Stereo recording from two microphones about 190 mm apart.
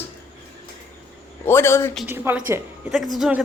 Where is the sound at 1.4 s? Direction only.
15° left (ahead or behind).